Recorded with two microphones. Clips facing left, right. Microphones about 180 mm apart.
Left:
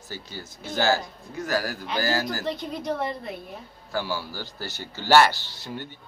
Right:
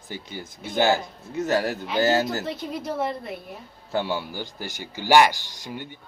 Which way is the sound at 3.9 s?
20° right (ahead or behind).